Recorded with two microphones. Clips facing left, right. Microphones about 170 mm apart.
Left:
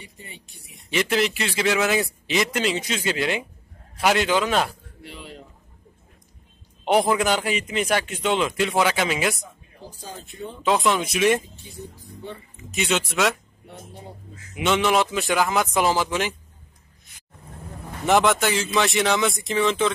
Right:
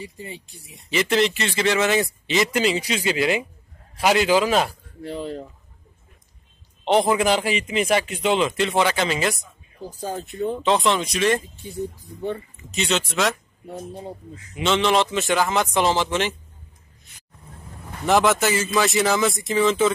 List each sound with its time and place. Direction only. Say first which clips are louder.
0.0 s speech: right 9 dB; 25° right (ahead or behind)
0.8 s a man's voice: right 2 dB; centre (ahead or behind)
6.8 s a man's voice: right 1 dB; 5° left (ahead or behind)
9.8 s speech: right 9 dB; 50° right (ahead or behind)
10.6 s a man's voice: left 1 dB; 5° left (ahead or behind)
11.7 s speech: right 9 dB; 50° right (ahead or behind)
12.9 s speech: even; 10° left (ahead or behind)
13.9 s speech: right 6 dB; 20° right (ahead or behind)
14.5 s a man's voice: right 1 dB; 10° left (ahead or behind)
18.0 s a man's voice: right 1 dB; centre (ahead or behind)